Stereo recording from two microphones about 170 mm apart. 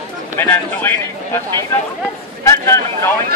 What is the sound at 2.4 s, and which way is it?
Speech, 15° left (ahead or behind).